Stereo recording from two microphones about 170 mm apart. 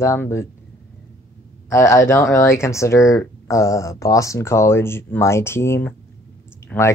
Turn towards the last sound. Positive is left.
turn(degrees=5)  # may be behind; listen again after turning